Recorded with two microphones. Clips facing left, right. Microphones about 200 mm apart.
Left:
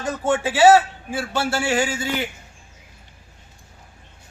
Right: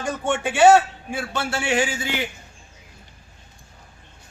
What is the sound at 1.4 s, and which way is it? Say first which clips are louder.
Speech: left 4 dB; 30° left (ahead or behind).